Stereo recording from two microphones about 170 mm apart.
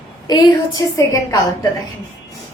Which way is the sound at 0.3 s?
25° left (ahead or behind).